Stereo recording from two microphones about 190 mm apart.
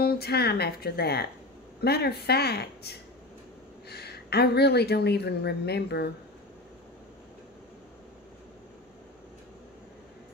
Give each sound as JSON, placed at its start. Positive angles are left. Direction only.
{"t": 0.0, "sound": "speech", "side_deg": 55}